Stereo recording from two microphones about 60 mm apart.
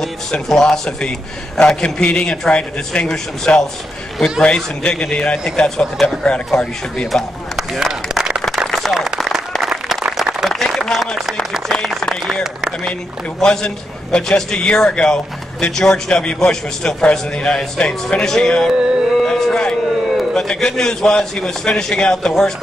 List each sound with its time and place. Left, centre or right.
0.0 s a man's voice: centre
7.5 s speech: centre
8.6 s clapping: centre
8.9 s applause: centre
9.6 s a sound: centre
12.0 s a sound: centre
13.4 s a man's voice: centre
18.7 s music: centre
19.2 s a sound: centre
20.3 s a man's voice: centre